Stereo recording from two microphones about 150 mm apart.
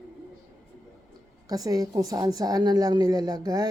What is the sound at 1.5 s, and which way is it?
Speech, 25° right (ahead or behind).